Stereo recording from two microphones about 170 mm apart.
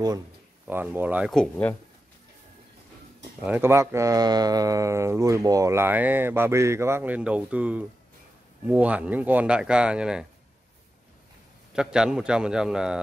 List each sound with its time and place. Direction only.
0.7 s speech: 10° right (ahead or behind)
1.3 s speech: 10° left (ahead or behind)
3.4 s speech: 10° right (ahead or behind)
11.7 s a man's voice: 5° right (ahead or behind)